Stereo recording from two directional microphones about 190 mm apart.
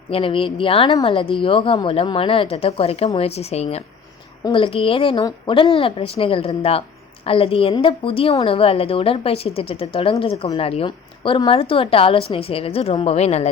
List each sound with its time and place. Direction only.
0.1 s a woman's voice: 30° left (ahead or behind)